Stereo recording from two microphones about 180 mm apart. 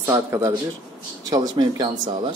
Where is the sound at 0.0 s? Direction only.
15° right (ahead or behind).